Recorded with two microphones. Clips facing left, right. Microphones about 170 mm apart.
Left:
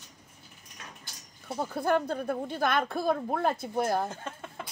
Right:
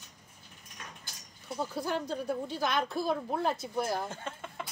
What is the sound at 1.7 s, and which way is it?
Speech, 55° left (ahead or behind).